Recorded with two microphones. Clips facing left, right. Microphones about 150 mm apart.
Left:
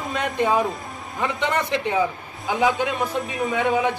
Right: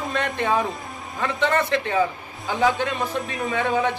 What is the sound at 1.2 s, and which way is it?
Speech, 15° left (ahead or behind).